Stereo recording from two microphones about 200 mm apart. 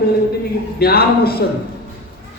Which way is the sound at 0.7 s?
50° left (ahead or behind).